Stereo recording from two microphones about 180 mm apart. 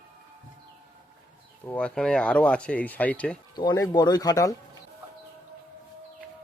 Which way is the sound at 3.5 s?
20° left (ahead or behind).